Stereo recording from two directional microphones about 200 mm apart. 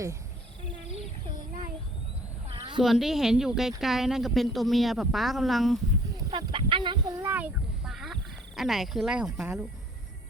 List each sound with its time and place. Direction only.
2.5 s a sound: 25° right (ahead or behind)
2.8 s speech: centre (ahead or behind)
6.3 s speech: 25° right (ahead or behind)